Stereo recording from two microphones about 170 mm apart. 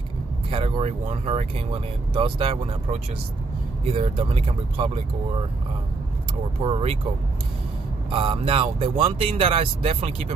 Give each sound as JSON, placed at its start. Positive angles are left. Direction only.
{"t": 0.5, "sound": "speech", "side_deg": -30}
{"t": 6.6, "sound": "speech", "side_deg": -35}
{"t": 8.1, "sound": "speech", "side_deg": -30}